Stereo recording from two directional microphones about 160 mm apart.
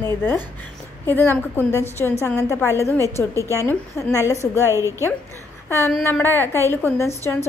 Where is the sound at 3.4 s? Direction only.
15° right (ahead or behind).